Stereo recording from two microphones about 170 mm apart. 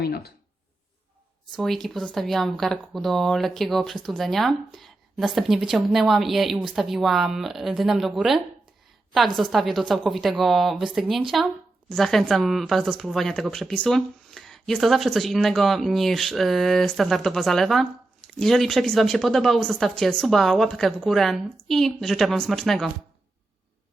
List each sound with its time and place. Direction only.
0.0 s speech: 65° left (ahead or behind)
1.5 s speech: centre (ahead or behind)